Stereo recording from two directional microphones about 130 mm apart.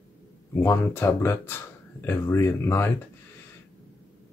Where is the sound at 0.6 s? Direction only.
20° left (ahead or behind).